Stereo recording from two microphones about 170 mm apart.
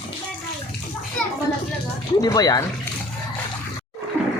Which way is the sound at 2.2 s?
20° left (ahead or behind).